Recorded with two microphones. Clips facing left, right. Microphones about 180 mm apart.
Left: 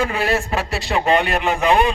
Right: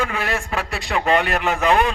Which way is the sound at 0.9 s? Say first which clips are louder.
Left 1 dB; 20° left (ahead or behind).